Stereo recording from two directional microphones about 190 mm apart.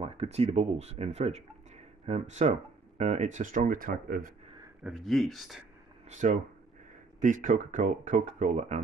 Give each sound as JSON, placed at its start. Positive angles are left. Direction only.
{"t": 0.0, "sound": "speech", "side_deg": -30}
{"t": 4.8, "sound": "speech", "side_deg": 0}
{"t": 6.0, "sound": "speech", "side_deg": -40}